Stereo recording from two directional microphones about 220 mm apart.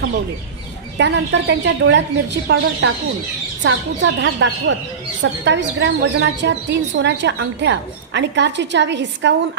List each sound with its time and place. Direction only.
0.9 s a woman's voice: 50° right (ahead or behind)